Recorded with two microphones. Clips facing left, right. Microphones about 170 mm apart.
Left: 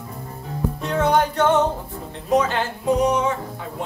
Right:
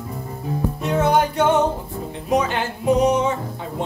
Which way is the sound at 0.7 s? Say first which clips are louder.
Right 1 dB; 5° right (ahead or behind).